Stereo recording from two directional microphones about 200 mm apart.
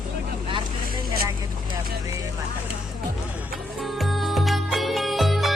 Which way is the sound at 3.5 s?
Centre (ahead or behind).